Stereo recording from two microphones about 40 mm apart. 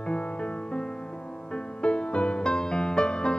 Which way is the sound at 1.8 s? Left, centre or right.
Left.